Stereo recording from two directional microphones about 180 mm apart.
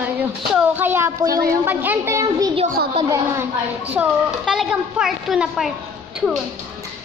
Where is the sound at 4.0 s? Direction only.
Centre (ahead or behind).